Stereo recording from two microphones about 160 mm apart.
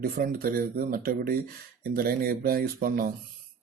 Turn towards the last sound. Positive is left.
turn(degrees=-65)  # may be behind; listen again after turning